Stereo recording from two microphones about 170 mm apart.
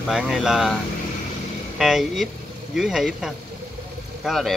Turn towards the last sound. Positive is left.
turn(degrees=0)  # may be behind; listen again after turning